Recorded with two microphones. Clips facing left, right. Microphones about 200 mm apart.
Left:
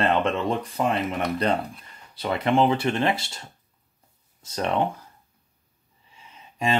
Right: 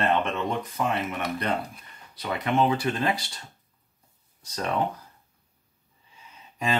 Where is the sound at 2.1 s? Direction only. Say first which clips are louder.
Left 4 dB; 30° left (ahead or behind).